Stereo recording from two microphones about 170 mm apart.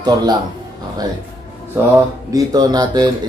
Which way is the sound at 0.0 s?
25° right (ahead or behind).